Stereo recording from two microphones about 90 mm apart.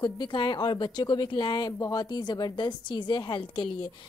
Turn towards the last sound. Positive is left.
turn(degrees=70)  # may be behind; listen again after turning